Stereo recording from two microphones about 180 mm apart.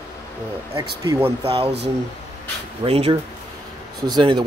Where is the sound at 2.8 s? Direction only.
35° right (ahead or behind).